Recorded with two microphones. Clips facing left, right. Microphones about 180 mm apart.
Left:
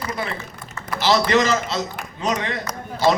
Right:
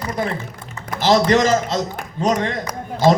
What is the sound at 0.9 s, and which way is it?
Typing, 45° right (ahead or behind).